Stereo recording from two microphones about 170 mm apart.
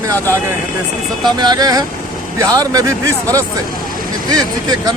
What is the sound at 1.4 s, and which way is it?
Speech, 25° right (ahead or behind).